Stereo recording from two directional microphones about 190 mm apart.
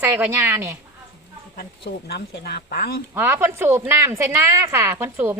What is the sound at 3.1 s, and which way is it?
A woman's voice, 10° right (ahead or behind).